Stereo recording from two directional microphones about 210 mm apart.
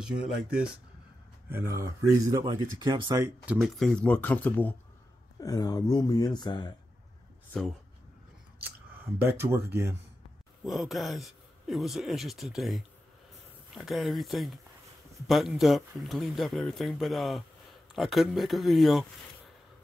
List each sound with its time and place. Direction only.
0.0 s a man's voice: 5° right (ahead or behind)
3.5 s speech: centre (ahead or behind)
5.4 s speech: 15° left (ahead or behind)
8.5 s speech: 10° right (ahead or behind)
10.6 s a man's voice: centre (ahead or behind)